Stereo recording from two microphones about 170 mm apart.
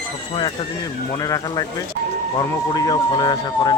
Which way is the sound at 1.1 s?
20° left (ahead or behind).